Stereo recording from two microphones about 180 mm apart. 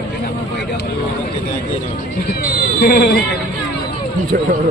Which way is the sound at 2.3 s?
55° left (ahead or behind).